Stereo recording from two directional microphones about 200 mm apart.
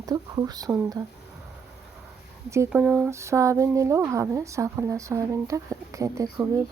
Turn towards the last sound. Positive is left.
turn(degrees=-15)  # may be behind; listen again after turning